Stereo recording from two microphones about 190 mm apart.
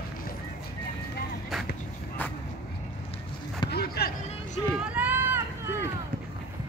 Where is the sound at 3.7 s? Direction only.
55° left (ahead or behind).